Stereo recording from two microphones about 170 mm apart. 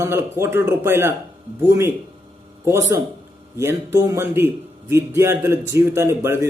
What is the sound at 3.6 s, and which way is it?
A man's voice, 15° right (ahead or behind).